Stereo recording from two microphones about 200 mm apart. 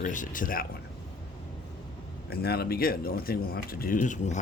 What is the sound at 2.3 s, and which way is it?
Speech, 50° left (ahead or behind).